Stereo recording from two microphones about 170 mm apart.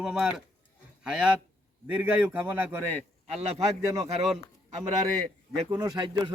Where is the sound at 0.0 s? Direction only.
5° right (ahead or behind); by 4.1 s 20° right (ahead or behind).